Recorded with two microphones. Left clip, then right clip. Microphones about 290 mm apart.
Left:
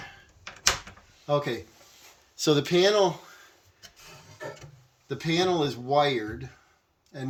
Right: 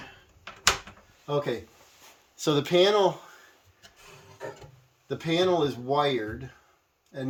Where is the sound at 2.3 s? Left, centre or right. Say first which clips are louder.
Even; centre.